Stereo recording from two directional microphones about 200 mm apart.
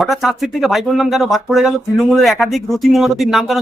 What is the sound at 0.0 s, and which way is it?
Speech, centre (ahead or behind).